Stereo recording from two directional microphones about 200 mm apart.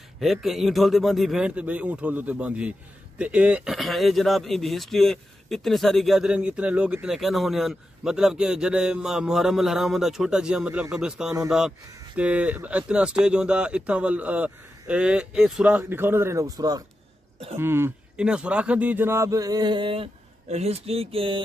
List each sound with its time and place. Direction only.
0.2 s speech: centre (ahead or behind); by 21.4 s 30° right (ahead or behind)